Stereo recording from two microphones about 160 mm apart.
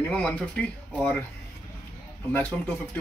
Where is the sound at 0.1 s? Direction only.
10° left (ahead or behind).